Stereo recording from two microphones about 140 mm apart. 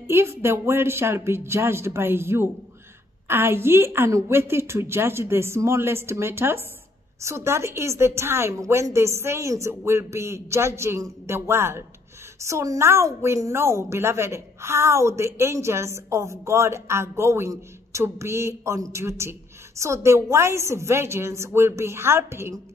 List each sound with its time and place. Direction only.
0.0 s a woman's voice: 20° right (ahead or behind)